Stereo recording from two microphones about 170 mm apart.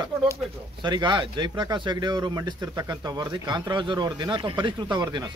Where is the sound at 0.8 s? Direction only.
25° right (ahead or behind).